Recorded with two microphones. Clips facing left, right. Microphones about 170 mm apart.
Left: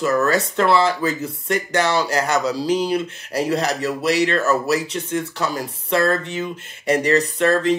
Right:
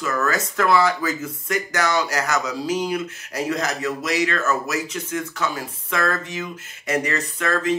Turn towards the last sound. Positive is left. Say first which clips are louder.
# left 5 dB
turn(degrees=35)  # may be behind; listen again after turning